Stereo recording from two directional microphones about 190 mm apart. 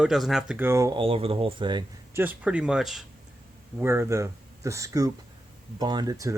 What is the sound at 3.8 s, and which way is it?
Speech, 15° right (ahead or behind).